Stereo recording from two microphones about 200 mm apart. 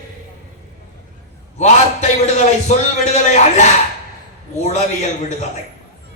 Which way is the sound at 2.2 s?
35° left (ahead or behind).